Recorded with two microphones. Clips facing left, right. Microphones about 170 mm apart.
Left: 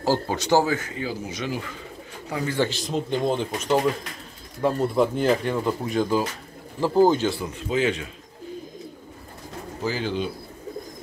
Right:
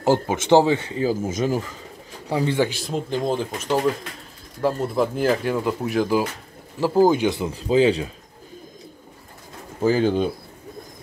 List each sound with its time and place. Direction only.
0.0 s speech: 20° right (ahead or behind)
1.2 s speech: 45° right (ahead or behind)
2.2 s speech: 30° right (ahead or behind)
2.5 s speech: 10° right (ahead or behind)
7.5 s a man's voice: 35° right (ahead or behind)
9.8 s speech: 45° right (ahead or behind)